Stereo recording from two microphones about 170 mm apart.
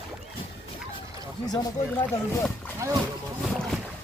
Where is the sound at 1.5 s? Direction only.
25° left (ahead or behind).